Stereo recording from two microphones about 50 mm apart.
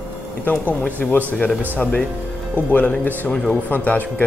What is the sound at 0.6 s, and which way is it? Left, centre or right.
A man's voice, left.